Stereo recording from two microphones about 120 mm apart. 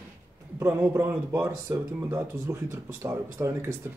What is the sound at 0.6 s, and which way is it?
Speech, 20° right (ahead or behind).